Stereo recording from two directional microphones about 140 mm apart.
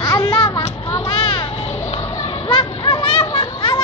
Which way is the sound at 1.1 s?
40° left (ahead or behind).